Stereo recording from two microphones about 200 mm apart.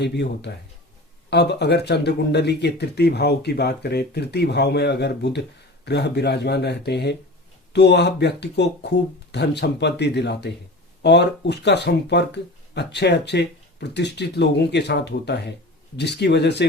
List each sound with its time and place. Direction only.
0.0 s speech: 55° left (ahead or behind)